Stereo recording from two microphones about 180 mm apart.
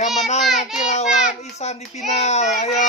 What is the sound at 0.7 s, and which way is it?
Child singing, 40° left (ahead or behind).